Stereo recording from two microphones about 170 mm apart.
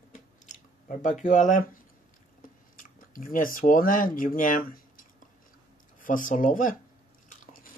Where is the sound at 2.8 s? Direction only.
50° left (ahead or behind).